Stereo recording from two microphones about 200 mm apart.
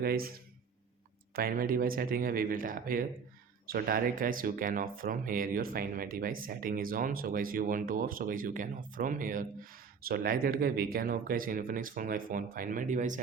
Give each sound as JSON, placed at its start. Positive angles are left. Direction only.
{"t": 0.0, "sound": "speech", "side_deg": -50}
{"t": 1.4, "sound": "speech", "side_deg": -45}